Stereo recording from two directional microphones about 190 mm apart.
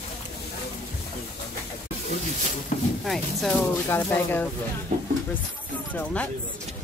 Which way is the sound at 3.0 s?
Centre (ahead or behind).